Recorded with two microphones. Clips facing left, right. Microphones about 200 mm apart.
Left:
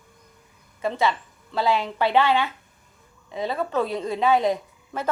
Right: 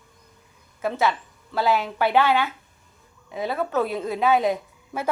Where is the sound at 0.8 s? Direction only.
5° right (ahead or behind).